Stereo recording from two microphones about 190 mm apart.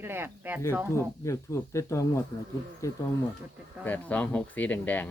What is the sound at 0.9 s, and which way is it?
Speech, 15° left (ahead or behind).